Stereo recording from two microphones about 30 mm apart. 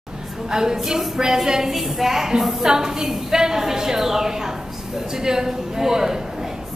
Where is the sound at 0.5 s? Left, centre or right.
Right.